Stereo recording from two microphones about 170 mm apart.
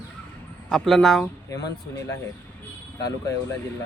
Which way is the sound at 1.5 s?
20° left (ahead or behind).